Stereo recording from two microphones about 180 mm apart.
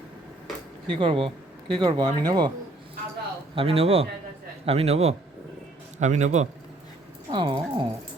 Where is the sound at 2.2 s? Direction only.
20° right (ahead or behind).